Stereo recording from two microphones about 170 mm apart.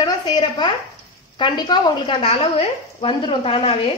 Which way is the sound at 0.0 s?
25° left (ahead or behind).